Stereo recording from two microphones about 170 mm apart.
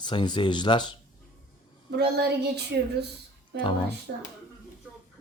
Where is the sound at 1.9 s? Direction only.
70° right (ahead or behind).